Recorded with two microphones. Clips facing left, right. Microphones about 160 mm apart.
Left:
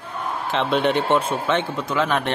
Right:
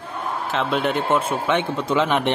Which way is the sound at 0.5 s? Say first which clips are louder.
Left 2 dB; centre (ahead or behind).